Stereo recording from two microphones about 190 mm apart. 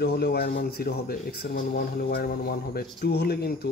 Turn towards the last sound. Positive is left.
turn(degrees=55)  # may be behind; listen again after turning